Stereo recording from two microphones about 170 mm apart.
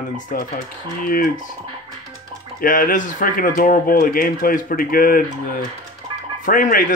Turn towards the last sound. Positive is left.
turn(degrees=50)  # may be behind; listen again after turning